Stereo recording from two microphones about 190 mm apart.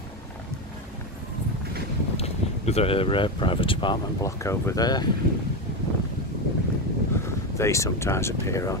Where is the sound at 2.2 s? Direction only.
35° left (ahead or behind).